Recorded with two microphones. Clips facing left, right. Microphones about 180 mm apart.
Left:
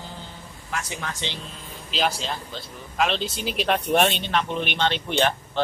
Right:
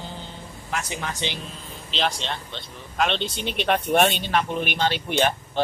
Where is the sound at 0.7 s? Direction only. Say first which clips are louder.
Right 2 dB; 20° right (ahead or behind).